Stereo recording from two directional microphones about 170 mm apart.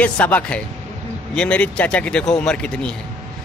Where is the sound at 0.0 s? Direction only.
10° left (ahead or behind).